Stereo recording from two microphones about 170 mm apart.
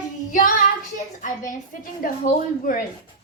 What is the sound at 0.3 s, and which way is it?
Child singing, 50° left (ahead or behind).